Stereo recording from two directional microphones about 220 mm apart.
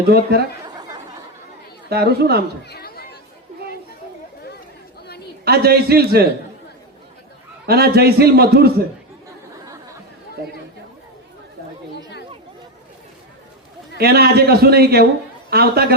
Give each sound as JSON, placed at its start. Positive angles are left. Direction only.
{"t": 0.1, "sound": "a man's voice", "side_deg": -45}
{"t": 0.6, "sound": "a sound", "side_deg": -20}
{"t": 1.9, "sound": "a man's voice", "side_deg": -45}
{"t": 2.6, "sound": "chatter", "side_deg": 45}
{"t": 5.0, "sound": "a sound", "side_deg": 45}
{"t": 5.5, "sound": "a man's voice", "side_deg": -45}
{"t": 7.7, "sound": "a man's voice", "side_deg": -45}
{"t": 14.0, "sound": "a man's voice", "side_deg": -45}